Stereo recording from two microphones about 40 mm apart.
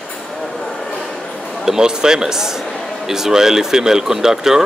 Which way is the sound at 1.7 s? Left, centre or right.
Centre.